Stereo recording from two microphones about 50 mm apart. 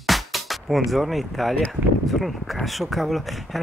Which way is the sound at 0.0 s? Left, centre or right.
Centre.